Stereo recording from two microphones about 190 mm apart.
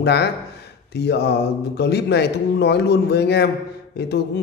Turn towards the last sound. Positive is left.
turn(degrees=60)  # may be behind; listen again after turning